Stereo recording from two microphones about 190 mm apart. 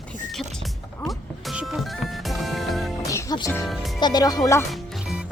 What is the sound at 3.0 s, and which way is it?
Music, 20° left (ahead or behind).